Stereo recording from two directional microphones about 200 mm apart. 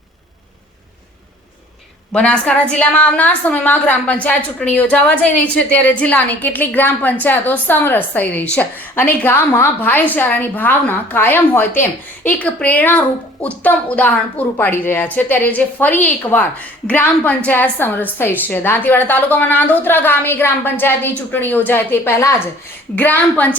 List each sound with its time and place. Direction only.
2.1 s a woman's voice: 5° left (ahead or behind)